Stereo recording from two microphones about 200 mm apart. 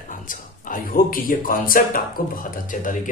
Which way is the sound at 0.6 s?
45° left (ahead or behind).